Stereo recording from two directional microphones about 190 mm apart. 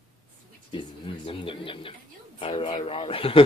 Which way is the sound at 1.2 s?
25° left (ahead or behind).